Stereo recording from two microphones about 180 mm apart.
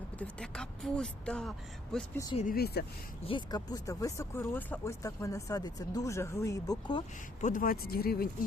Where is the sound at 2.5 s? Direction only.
60° left (ahead or behind).